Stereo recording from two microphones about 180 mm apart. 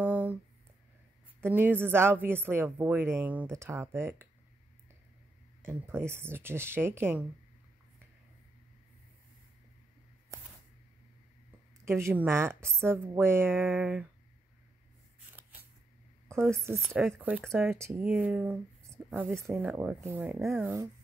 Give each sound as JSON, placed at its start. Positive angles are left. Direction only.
{"t": 0.0, "sound": "a sound", "side_deg": -10}
{"t": 1.4, "sound": "a woman's voice", "side_deg": -10}
{"t": 5.7, "sound": "a woman's voice", "side_deg": -15}
{"t": 11.8, "sound": "a woman's voice", "side_deg": -15}
{"t": 15.1, "sound": "a sound", "side_deg": -10}
{"t": 16.6, "sound": "a woman's voice", "side_deg": -15}